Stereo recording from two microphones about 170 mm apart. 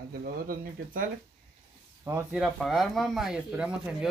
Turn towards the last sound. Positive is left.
turn(degrees=-5)  # may be behind; listen again after turning